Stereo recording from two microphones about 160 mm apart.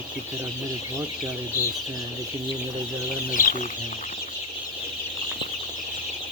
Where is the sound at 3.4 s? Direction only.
60° left (ahead or behind).